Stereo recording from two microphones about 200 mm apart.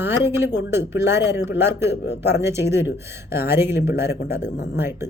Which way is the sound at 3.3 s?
10° right (ahead or behind).